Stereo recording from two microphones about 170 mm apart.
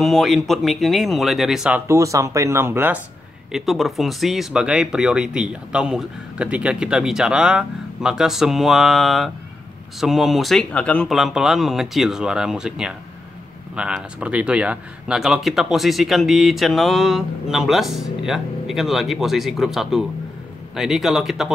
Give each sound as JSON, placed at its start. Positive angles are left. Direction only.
{"t": 0.0, "sound": "speech", "side_deg": 0}
{"t": 1.9, "sound": "speech", "side_deg": -20}
{"t": 3.5, "sound": "speech", "side_deg": 0}